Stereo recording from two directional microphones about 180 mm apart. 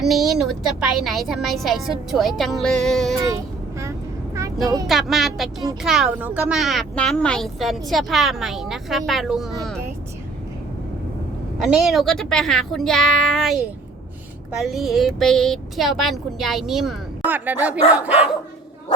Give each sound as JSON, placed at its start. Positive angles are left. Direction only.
{"t": 0.0, "sound": "a woman's voice", "side_deg": 0}
{"t": 3.2, "sound": "vehicle", "side_deg": -15}
{"t": 4.9, "sound": "a woman's voice", "side_deg": 0}
{"t": 11.6, "sound": "a woman's voice", "side_deg": 0}